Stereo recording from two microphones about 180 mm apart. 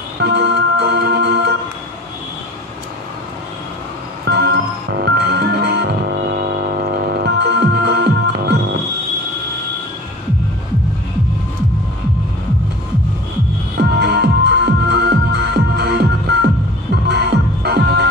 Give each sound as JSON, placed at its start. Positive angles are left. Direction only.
{"t": 0.2, "sound": "organ", "side_deg": -70}
{"t": 4.3, "sound": "music", "side_deg": -65}
{"t": 13.7, "sound": "music", "side_deg": -65}